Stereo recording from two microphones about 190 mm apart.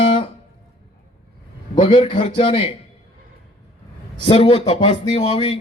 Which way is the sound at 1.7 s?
25° left (ahead or behind).